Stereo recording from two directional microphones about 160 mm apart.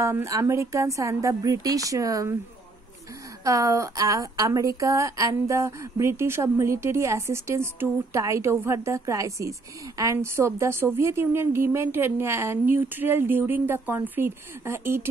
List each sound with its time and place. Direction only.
0.0 s speech: 20° right (ahead or behind)
3.4 s speech: 20° right (ahead or behind)